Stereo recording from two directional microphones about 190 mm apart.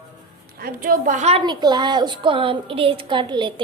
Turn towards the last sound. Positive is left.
turn(degrees=-25)  # may be behind; listen again after turning